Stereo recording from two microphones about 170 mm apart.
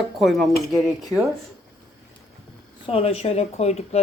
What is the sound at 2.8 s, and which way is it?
Speech, 35° left (ahead or behind).